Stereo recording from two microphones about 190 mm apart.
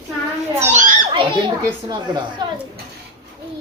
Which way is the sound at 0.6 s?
40° right (ahead or behind).